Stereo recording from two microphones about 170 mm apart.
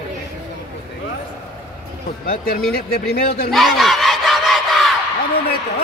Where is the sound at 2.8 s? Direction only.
65° left (ahead or behind).